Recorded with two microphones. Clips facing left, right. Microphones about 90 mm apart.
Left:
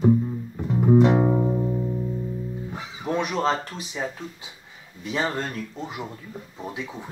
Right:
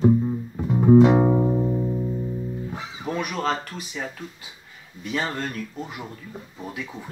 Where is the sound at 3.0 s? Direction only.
25° left (ahead or behind).